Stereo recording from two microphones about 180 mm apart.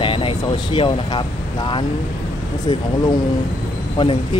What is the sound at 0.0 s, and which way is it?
Speech, 30° left (ahead or behind).